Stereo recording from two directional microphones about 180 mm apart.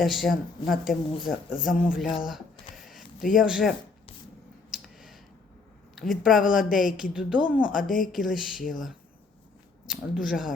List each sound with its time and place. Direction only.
0.0 s speech: centre (ahead or behind)
2.2 s a sound: centre (ahead or behind)
3.3 s speech: 5° right (ahead or behind)
4.7 s finger snapping: centre (ahead or behind)
6.0 s speech: centre (ahead or behind)
7.8 s a woman's voice: 50° left (ahead or behind)
8.1 s speech: centre (ahead or behind)